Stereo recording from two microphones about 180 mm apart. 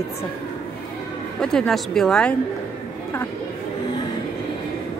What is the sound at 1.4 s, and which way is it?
Speech, 5° left (ahead or behind).